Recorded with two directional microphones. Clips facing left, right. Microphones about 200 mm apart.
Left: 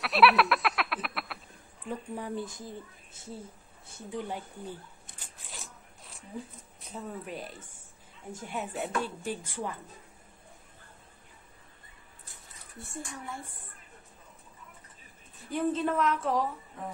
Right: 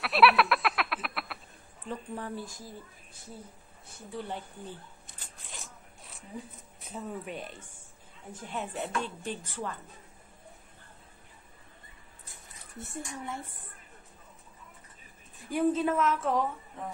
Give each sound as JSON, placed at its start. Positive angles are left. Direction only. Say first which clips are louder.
{"t": 0.0, "sound": "a sound", "louder": "even", "side_deg": 0}
{"t": 1.9, "sound": "a woman's voice", "louder": "left 1 dB", "side_deg": 15}
{"t": 5.5, "sound": "zipper", "louder": "even", "side_deg": 0}
{"t": 6.9, "sound": "a woman's voice", "louder": "right 1 dB", "side_deg": 0}
{"t": 12.7, "sound": "speech", "louder": "right 2 dB", "side_deg": -20}
{"t": 15.5, "sound": "a woman's voice", "louder": "right 2 dB", "side_deg": -5}